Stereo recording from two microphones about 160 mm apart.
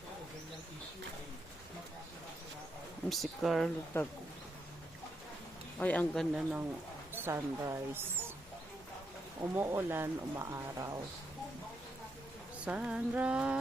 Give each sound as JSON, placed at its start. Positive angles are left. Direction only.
{"t": 3.1, "sound": "speech", "side_deg": 0}
{"t": 3.9, "sound": "speech", "side_deg": 15}
{"t": 5.8, "sound": "speech", "side_deg": 10}
{"t": 6.3, "sound": "a woman's voice", "side_deg": -10}
{"t": 9.4, "sound": "speech", "side_deg": -15}
{"t": 12.6, "sound": "speech", "side_deg": -5}